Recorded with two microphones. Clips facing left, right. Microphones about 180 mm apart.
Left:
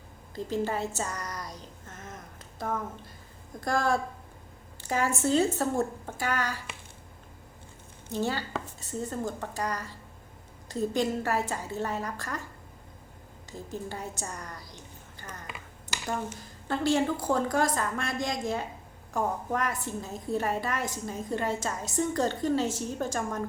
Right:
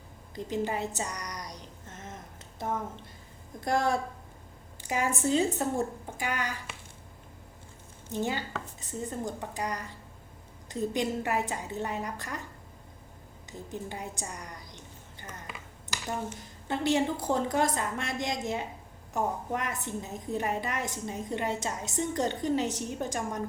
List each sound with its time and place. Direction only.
0.3 s a sound: 20° right (ahead or behind)
3.6 s a woman's voice: 20° right (ahead or behind)
8.1 s a woman's voice: 15° right (ahead or behind)
13.7 s a woman's voice: 15° right (ahead or behind)
16.6 s a woman's voice: 20° right (ahead or behind)